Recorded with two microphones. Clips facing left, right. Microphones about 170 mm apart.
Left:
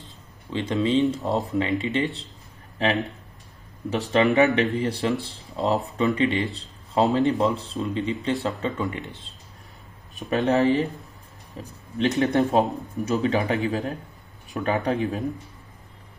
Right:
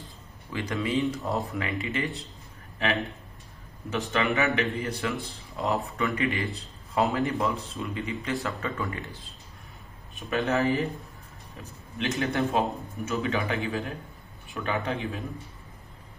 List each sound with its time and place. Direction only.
0.0 s speech: 25° left (ahead or behind)
3.9 s speech: 35° left (ahead or behind)
10.1 s speech: 35° left (ahead or behind)